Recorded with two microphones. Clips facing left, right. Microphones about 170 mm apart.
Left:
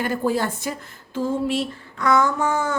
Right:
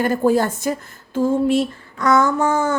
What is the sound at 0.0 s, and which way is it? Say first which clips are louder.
A woman's voice: right 6 dB; 45° right (ahead or behind).